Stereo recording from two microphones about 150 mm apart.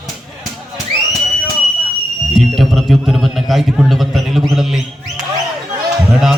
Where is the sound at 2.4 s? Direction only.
Centre (ahead or behind).